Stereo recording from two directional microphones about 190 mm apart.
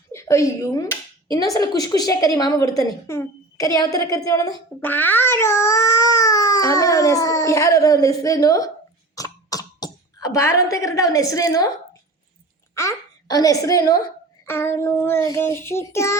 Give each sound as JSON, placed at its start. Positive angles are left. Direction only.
{"t": 0.1, "sound": "speech", "side_deg": 15}
{"t": 9.1, "sound": "cough", "side_deg": 20}
{"t": 12.7, "sound": "a woman's voice", "side_deg": 15}